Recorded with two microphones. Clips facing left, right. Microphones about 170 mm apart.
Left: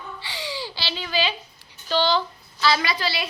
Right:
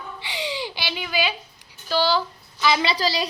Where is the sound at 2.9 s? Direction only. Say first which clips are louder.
Right 4 dB; 40° right (ahead or behind).